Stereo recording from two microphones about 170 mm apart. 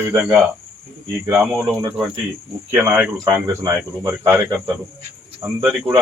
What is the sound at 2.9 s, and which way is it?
Speech, 10° right (ahead or behind).